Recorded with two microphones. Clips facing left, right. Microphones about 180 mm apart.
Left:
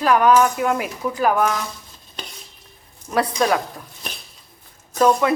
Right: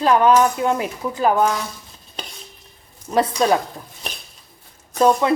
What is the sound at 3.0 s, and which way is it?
Speech, 25° right (ahead or behind).